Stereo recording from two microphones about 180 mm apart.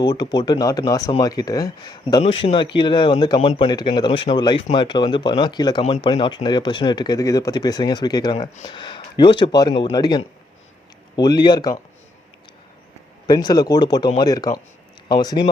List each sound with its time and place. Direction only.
0.0 s speech: 25° left (ahead or behind)
13.2 s speech: 20° left (ahead or behind)